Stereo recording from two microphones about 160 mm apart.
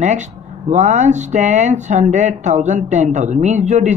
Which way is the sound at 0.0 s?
45° right (ahead or behind).